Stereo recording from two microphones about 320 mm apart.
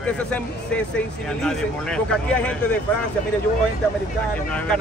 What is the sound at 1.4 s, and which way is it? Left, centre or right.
Speech, centre.